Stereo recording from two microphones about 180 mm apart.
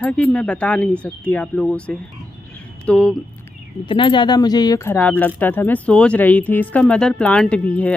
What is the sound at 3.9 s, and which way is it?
Speech, 25° left (ahead or behind).